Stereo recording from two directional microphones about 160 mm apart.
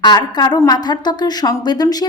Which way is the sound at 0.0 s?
25° left (ahead or behind).